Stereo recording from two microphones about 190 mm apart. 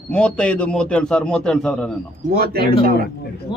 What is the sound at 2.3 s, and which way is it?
Speech, 55° right (ahead or behind).